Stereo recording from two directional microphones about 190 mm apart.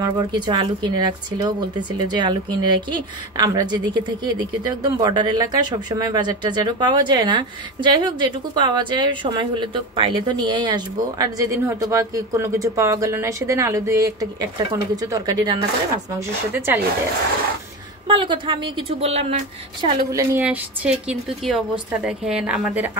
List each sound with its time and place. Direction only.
0.0 s a woman's voice: 20° right (ahead or behind)
18.0 s speech: 25° right (ahead or behind)
20.1 s a woman's voice: 15° right (ahead or behind)
20.4 s a woman's voice: 5° right (ahead or behind)